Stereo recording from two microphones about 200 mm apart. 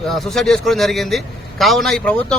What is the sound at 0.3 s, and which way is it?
A man's voice, centre (ahead or behind).